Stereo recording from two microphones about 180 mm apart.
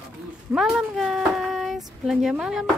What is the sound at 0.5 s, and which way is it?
Speech, centre (ahead or behind).